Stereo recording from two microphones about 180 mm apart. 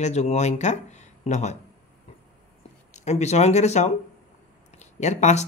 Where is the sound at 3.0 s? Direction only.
40° left (ahead or behind).